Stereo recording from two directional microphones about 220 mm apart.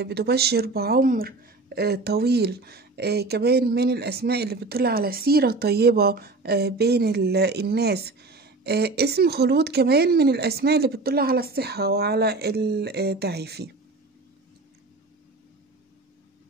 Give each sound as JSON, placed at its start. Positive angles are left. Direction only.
{"t": 0.0, "sound": "speech", "side_deg": -45}